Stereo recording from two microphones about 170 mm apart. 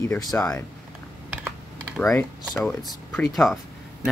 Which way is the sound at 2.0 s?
5° left (ahead or behind).